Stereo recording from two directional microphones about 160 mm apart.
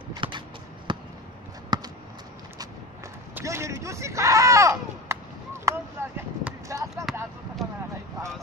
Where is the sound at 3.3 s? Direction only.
15° right (ahead or behind).